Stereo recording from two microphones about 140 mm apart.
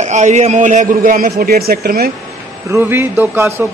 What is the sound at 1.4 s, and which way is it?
Speech, 90° right.